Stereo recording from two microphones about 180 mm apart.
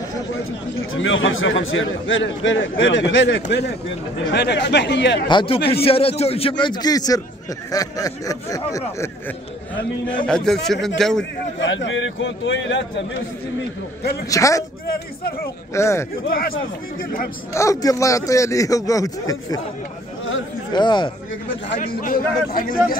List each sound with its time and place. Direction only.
0.9 s a man's voice: 90° left
5.3 s a man's voice: 25° left (ahead or behind)
10.2 s a man's voice: 5° left (ahead or behind)
11.6 s a man's voice: 90° left
14.3 s speech: 15° left (ahead or behind)
15.7 s speech: 15° left (ahead or behind)
16.3 s speech: 55° left (ahead or behind)
17.6 s a man's voice: 15° left (ahead or behind)
20.7 s a man's voice: 25° left (ahead or behind)
21.7 s a man's voice: 50° left (ahead or behind)